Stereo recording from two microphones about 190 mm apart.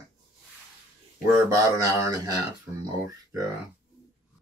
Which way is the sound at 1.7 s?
20° right (ahead or behind).